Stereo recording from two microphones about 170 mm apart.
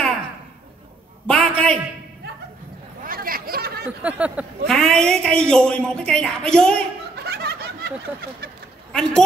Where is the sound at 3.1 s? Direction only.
55° right (ahead or behind).